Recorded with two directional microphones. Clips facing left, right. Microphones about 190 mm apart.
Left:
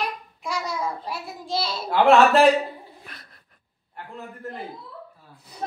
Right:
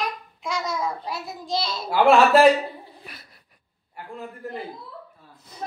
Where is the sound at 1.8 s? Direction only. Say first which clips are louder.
Even; 10° right (ahead or behind).